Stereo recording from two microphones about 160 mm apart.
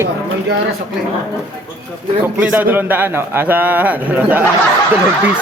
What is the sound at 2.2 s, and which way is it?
A man's voice, 10° right (ahead or behind).